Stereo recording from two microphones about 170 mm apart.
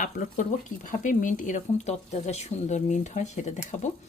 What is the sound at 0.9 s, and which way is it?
Speech, 50° left (ahead or behind).